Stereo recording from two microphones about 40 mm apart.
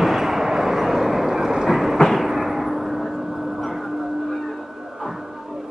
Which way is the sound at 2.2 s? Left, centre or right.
Centre.